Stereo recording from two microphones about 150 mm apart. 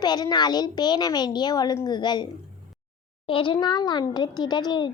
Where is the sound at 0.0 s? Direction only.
30° left (ahead or behind).